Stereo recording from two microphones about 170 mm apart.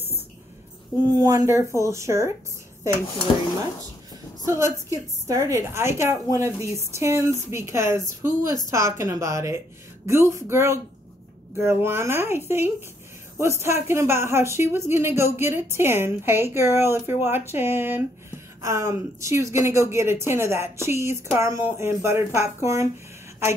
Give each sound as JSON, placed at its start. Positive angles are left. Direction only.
{"t": 1.0, "sound": "speech", "side_deg": -20}
{"t": 4.5, "sound": "speech", "side_deg": -15}